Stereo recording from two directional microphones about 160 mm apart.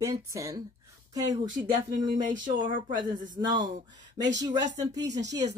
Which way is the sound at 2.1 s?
55° right (ahead or behind).